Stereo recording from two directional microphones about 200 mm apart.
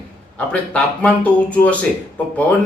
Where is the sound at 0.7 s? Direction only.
5° left (ahead or behind).